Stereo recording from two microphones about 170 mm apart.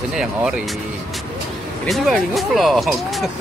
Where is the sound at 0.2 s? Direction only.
5° right (ahead or behind).